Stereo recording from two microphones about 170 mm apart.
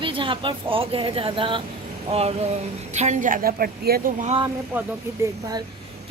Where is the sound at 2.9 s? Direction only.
45° right (ahead or behind).